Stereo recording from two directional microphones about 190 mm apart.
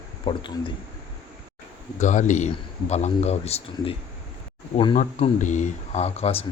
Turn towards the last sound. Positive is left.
turn(degrees=35)  # may be behind; listen again after turning